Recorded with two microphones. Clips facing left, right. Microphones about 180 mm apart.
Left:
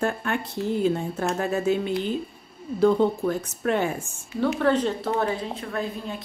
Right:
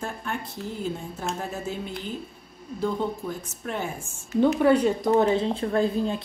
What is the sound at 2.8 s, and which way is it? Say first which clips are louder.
Speech: left 8 dB; 75° left (ahead or behind).